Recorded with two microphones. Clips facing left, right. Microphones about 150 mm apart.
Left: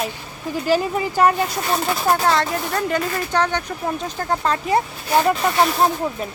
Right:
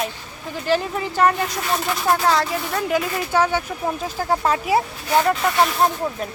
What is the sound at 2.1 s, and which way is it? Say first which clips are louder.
Speech: even; centre (ahead or behind).